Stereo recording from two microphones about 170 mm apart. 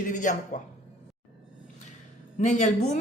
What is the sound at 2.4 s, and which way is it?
Speech, 45° left (ahead or behind).